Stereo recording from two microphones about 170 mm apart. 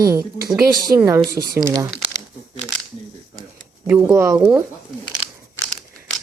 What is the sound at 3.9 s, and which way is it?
Speech, 10° right (ahead or behind).